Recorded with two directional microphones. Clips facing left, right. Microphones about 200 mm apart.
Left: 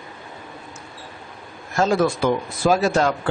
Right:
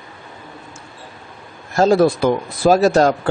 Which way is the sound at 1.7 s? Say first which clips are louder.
Right 6 dB; 35° right (ahead or behind).